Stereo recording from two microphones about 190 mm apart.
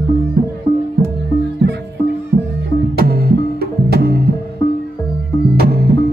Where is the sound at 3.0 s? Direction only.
55° right (ahead or behind).